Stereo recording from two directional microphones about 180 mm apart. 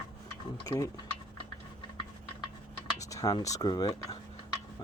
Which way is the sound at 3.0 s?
20° left (ahead or behind).